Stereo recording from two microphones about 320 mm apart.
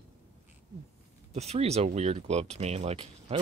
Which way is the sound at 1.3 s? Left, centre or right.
Centre.